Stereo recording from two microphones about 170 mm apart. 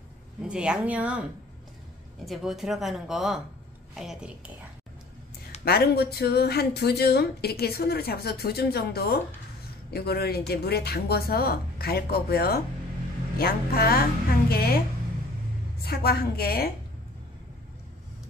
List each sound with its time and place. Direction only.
0.5 s a woman's voice: 5° right (ahead or behind)
2.2 s a woman's voice: centre (ahead or behind)
5.7 s a woman's voice: 70° left (ahead or behind)
15.8 s a woman's voice: 65° left (ahead or behind)